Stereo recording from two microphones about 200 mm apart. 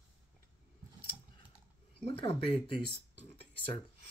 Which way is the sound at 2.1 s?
30° left (ahead or behind).